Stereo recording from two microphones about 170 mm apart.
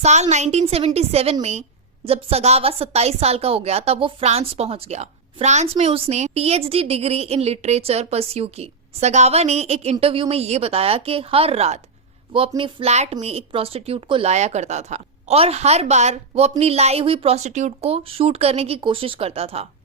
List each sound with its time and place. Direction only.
0.0 s a woman's voice: 40° right (ahead or behind)